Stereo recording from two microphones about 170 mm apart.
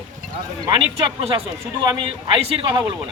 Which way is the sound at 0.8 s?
30° right (ahead or behind).